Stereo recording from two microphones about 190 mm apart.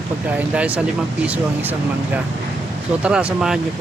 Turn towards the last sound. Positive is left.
turn(degrees=-5)  # may be behind; listen again after turning